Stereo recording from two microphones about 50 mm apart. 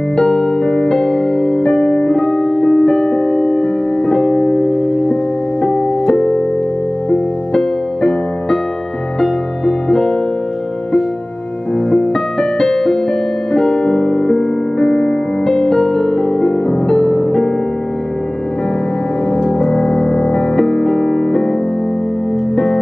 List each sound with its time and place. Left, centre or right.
0.1 s music: centre
2.9 s music: centre; by 5.1 s left
7.5 s music: centre
12.1 s music: centre
19.6 s music: left
20.5 s music: centre